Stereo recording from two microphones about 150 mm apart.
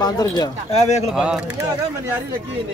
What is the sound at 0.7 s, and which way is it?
Speech, 50° left (ahead or behind).